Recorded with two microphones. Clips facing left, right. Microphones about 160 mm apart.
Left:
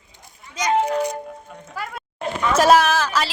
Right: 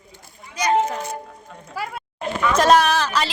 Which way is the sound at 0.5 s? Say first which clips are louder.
Even; 20° left (ahead or behind).